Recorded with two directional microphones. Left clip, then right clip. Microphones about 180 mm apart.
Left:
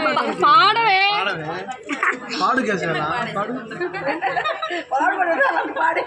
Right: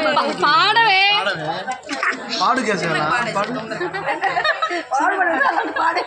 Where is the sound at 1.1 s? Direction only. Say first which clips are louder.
Right 3 dB; 25° right (ahead or behind).